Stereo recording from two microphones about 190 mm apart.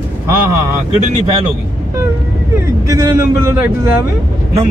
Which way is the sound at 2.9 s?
15° right (ahead or behind).